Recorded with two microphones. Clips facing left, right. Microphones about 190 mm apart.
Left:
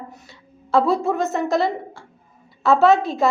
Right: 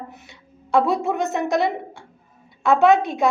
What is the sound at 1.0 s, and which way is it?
Speech, centre (ahead or behind).